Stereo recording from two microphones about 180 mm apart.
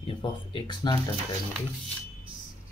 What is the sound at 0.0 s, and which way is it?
Speech, 30° left (ahead or behind).